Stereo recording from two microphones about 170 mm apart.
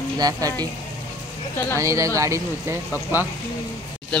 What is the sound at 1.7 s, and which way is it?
Speech, 20° right (ahead or behind).